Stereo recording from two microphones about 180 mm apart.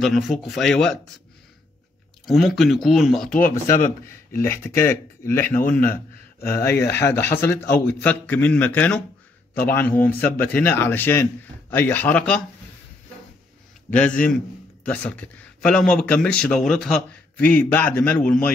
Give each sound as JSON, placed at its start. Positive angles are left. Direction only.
{"t": 0.0, "sound": "speech", "side_deg": 0}
{"t": 2.2, "sound": "speech", "side_deg": 0}
{"t": 3.3, "sound": "speech", "side_deg": 50}
{"t": 4.3, "sound": "a man's voice", "side_deg": 15}
{"t": 6.9, "sound": "a man's voice", "side_deg": 15}
{"t": 13.8, "sound": "a man's voice", "side_deg": 5}